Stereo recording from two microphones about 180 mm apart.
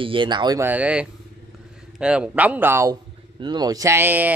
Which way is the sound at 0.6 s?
10° right (ahead or behind).